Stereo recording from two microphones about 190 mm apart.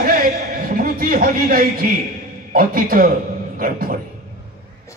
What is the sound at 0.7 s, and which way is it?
A man's voice, 50° right (ahead or behind).